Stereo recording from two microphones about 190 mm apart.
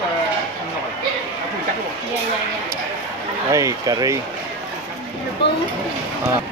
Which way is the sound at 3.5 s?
20° right (ahead or behind).